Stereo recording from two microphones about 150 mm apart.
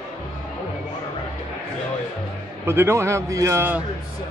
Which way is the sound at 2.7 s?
15° right (ahead or behind).